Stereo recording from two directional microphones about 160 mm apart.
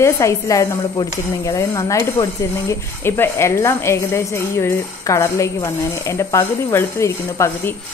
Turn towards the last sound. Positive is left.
turn(degrees=15)  # may be behind; listen again after turning